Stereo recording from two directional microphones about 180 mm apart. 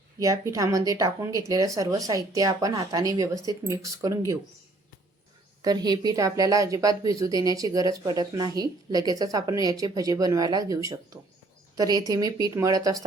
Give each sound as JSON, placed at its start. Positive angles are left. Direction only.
{"t": 0.2, "sound": "a woman's voice", "side_deg": -20}
{"t": 5.6, "sound": "a woman's voice", "side_deg": -20}